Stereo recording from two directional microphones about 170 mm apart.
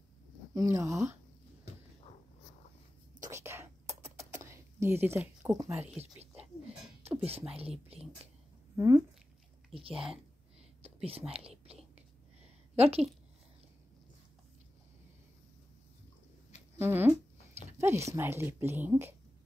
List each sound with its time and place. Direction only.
0.6 s speech: 20° right (ahead or behind)
3.2 s whispering: 15° right (ahead or behind)
4.3 s a sound: 15° right (ahead or behind)
5.5 s speech: 20° right (ahead or behind)
8.7 s speech: 20° right (ahead or behind)
9.9 s speech: 5° right (ahead or behind)
10.8 s whispering: 35° right (ahead or behind)
12.7 s a woman's voice: 35° right (ahead or behind)
16.7 s speech: 15° right (ahead or behind)